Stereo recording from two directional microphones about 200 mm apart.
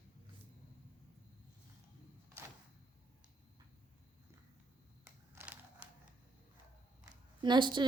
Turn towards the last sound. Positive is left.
turn(degrees=-25)  # may be behind; listen again after turning